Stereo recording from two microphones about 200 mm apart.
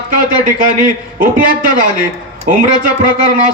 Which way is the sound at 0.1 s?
40° right (ahead or behind).